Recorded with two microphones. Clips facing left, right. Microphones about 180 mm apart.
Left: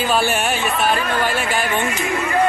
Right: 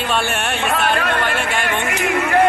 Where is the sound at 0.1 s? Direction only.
Centre (ahead or behind).